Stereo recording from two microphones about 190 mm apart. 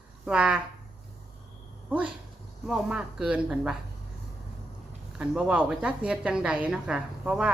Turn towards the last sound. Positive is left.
turn(degrees=-5)  # may be behind; listen again after turning